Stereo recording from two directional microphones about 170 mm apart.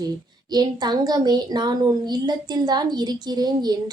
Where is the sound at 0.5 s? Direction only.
25° right (ahead or behind).